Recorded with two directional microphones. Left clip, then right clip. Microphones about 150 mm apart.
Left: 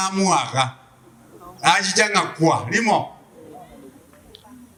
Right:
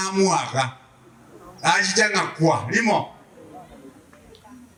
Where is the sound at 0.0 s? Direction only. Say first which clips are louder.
Left 1 dB; 20° left (ahead or behind).